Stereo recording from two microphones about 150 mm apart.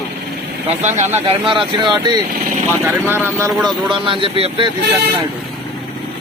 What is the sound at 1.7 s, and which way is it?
Speech, 30° right (ahead or behind).